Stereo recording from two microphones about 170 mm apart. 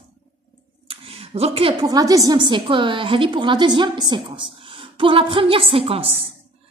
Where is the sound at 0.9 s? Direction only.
35° right (ahead or behind).